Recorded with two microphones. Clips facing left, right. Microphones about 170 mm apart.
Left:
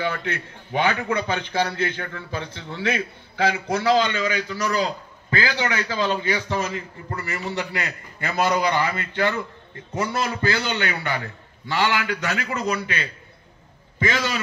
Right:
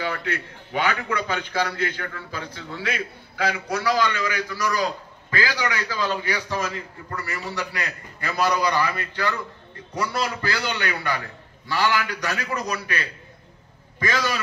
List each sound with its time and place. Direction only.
0.2 s a man's voice: 25° left (ahead or behind)
13.9 s a man's voice: 25° left (ahead or behind)